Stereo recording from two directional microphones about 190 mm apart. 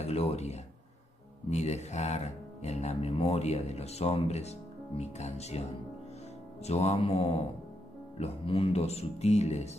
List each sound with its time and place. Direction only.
0.0 s speech: 30° left (ahead or behind)